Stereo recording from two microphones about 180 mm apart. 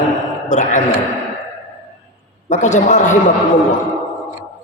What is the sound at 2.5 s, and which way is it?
Speech, 40° left (ahead or behind).